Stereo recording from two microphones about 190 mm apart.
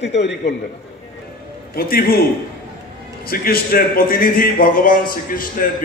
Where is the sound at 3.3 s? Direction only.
50° left (ahead or behind).